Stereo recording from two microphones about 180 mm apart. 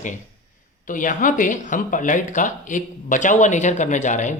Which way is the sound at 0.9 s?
45° left (ahead or behind).